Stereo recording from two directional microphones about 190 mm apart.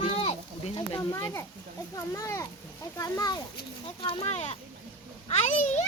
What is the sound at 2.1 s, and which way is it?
A child's voice, 15° left (ahead or behind).